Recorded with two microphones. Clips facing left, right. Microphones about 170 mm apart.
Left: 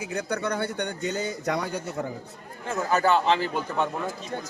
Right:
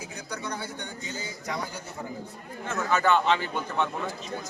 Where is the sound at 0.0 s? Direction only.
65° left (ahead or behind).